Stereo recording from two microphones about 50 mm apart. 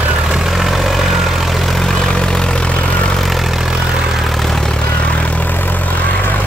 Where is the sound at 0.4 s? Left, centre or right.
Centre.